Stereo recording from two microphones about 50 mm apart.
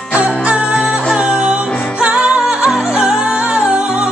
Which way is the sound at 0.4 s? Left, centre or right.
Right.